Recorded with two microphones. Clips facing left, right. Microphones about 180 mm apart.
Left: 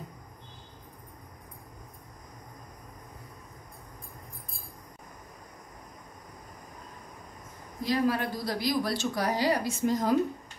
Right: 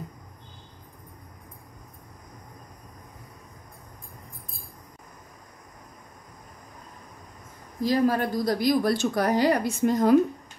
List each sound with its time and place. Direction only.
7.8 s speech: 40° right (ahead or behind); by 10.1 s 60° right (ahead or behind)